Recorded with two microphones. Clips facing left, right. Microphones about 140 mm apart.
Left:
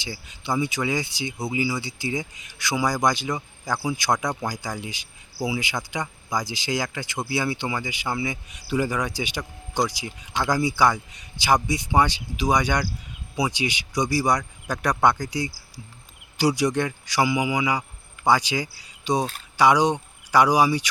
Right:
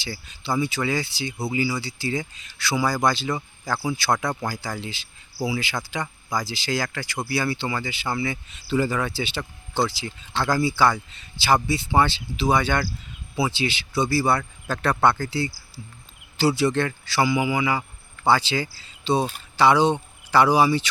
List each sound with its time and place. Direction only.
0.0 s a man's voice: 20° left (ahead or behind)